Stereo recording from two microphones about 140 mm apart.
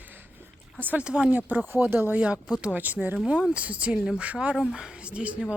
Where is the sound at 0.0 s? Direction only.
15° right (ahead or behind).